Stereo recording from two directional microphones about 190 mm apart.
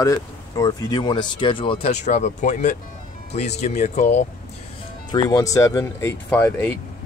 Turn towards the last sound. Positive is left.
turn(degrees=10)  # may be behind; listen again after turning